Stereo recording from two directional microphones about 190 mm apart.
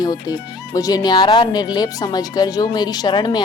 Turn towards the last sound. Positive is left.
turn(degrees=25)  # may be behind; listen again after turning